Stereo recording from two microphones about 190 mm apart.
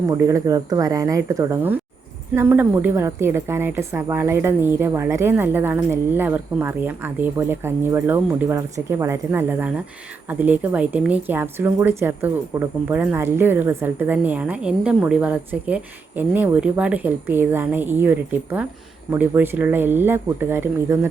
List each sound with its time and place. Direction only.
0.1 s a woman's voice: 15° right (ahead or behind)